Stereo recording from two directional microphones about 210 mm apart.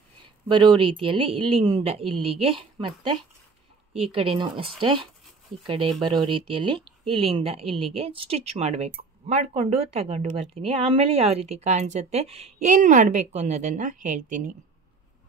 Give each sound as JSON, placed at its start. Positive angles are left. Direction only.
{"t": 0.5, "sound": "speech", "side_deg": -25}